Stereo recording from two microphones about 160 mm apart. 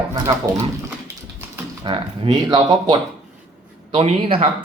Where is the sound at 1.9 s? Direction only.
30° right (ahead or behind).